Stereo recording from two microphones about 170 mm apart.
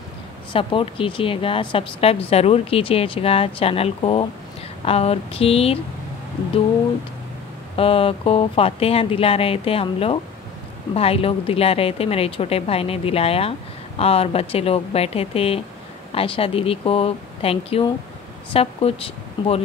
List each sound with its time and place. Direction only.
0.5 s a woman's voice: 30° left (ahead or behind)
7.7 s a woman's voice: 35° left (ahead or behind)